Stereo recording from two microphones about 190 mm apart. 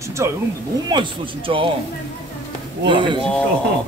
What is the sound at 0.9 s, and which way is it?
Speech, 25° right (ahead or behind).